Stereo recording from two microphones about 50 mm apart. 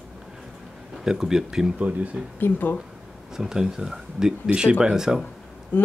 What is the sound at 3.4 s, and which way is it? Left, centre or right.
Speech, centre.